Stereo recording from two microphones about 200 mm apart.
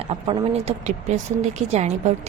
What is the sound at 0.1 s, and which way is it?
Speech, 30° right (ahead or behind).